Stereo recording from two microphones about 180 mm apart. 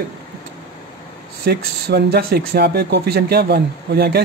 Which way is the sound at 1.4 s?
60° right (ahead or behind).